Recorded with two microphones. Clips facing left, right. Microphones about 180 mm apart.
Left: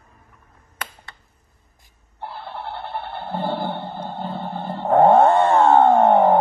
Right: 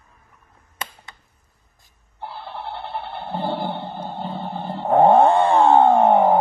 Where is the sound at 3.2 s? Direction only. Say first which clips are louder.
Even; 20° right (ahead or behind).